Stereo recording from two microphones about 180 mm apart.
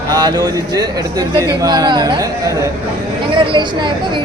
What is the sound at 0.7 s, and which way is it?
Speech, 20° right (ahead or behind).